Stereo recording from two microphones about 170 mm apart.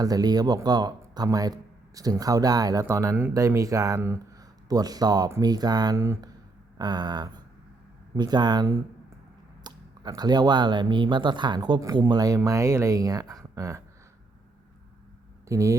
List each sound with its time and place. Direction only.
0.0 s speech: 20° right (ahead or behind)
6.7 s a sound: 25° right (ahead or behind)
8.1 s speech: 25° right (ahead or behind)
15.4 s speech: 20° right (ahead or behind)